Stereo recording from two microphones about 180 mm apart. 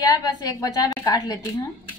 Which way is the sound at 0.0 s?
20° left (ahead or behind).